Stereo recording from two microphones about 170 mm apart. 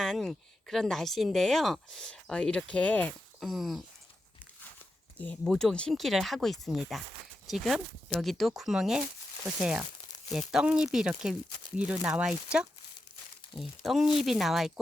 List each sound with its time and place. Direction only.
0.0 s speech: centre (ahead or behind)
5.1 s speech: 5° left (ahead or behind)